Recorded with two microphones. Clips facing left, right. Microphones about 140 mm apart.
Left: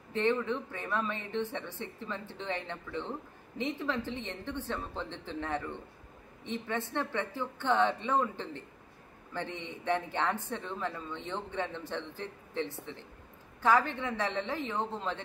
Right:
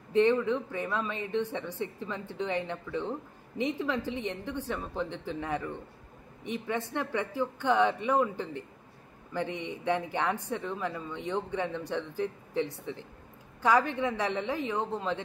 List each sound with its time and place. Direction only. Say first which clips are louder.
0.1 s speech: right 5 dB; 15° right (ahead or behind)